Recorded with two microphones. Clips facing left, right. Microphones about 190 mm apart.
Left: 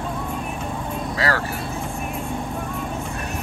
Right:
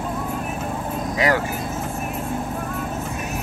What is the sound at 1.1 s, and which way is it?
Speech, 20° right (ahead or behind).